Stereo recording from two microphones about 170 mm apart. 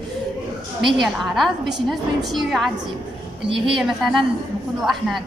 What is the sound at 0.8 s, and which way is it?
A woman's voice, centre (ahead or behind).